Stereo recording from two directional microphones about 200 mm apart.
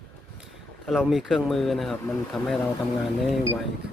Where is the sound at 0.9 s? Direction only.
Centre (ahead or behind).